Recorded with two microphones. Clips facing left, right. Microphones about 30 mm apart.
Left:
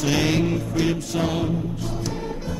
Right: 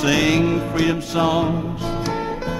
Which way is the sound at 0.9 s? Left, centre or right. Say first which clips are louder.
Right 5 dB; right.